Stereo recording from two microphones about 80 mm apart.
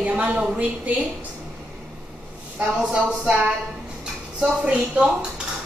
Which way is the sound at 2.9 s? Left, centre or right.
Centre.